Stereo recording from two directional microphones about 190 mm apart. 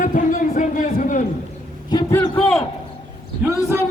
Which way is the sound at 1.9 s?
20° left (ahead or behind).